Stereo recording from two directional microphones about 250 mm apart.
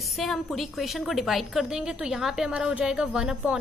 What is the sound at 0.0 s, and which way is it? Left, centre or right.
A woman's voice, centre.